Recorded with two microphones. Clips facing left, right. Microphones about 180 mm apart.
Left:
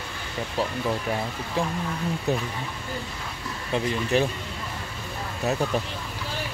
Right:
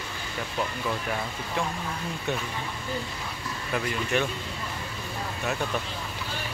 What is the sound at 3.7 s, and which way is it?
Speech, 30° left (ahead or behind).